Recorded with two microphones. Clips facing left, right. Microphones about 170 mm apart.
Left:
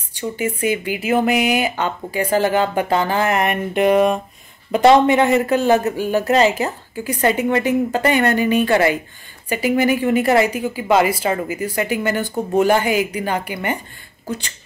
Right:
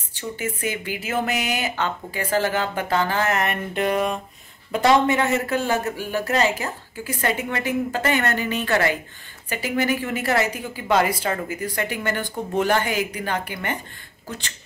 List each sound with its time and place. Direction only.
0.1 s a woman's voice: 15° left (ahead or behind)